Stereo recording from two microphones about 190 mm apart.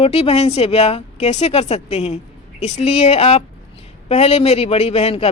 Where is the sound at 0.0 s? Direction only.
30° left (ahead or behind).